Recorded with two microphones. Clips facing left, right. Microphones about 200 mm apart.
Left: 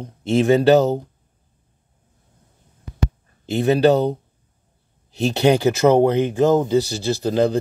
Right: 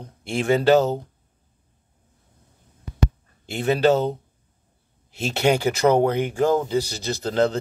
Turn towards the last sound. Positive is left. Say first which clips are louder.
# left 3 dB
turn(degrees=15)  # may be behind; listen again after turning